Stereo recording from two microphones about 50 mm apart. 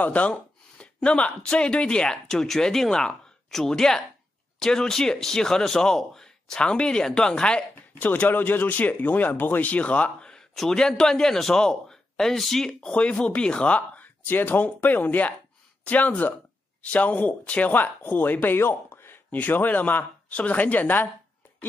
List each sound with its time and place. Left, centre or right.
0.0 s speech: left
2.4 s speech: centre
8.0 s speech: left
10.5 s speech: centre
12.9 s speech: left
14.2 s speech: left
18.6 s a sound: left
19.3 s speech: left